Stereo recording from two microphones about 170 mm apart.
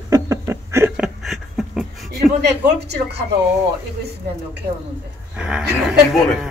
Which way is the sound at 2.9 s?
75° right (ahead or behind).